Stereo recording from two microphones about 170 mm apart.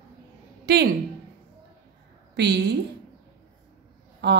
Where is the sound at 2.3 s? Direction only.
85° right.